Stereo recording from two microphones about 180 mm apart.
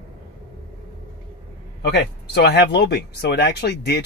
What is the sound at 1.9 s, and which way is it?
Speech, 60° left (ahead or behind).